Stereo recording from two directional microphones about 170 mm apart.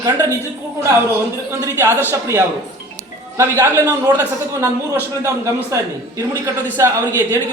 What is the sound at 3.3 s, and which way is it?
A man's voice, 15° right (ahead or behind).